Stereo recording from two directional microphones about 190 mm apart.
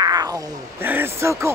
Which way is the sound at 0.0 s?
20° right (ahead or behind).